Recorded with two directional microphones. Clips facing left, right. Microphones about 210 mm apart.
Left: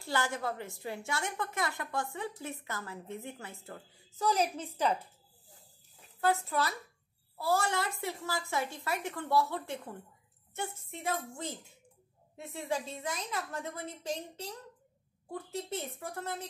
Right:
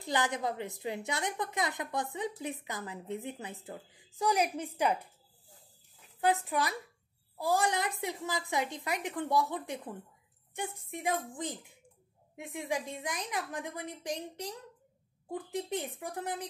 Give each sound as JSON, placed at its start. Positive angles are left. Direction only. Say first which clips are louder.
{"t": 0.0, "sound": "a woman's voice", "louder": "right 2 dB", "side_deg": -20}
{"t": 6.2, "sound": "a woman's voice", "louder": "right 1 dB", "side_deg": -15}